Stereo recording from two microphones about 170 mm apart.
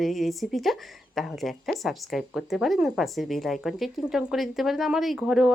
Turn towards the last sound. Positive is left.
turn(degrees=-5)  # may be behind; listen again after turning